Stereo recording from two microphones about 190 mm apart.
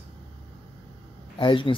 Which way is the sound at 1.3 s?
25° left (ahead or behind).